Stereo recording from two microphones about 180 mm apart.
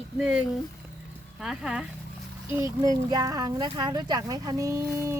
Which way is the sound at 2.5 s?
20° right (ahead or behind).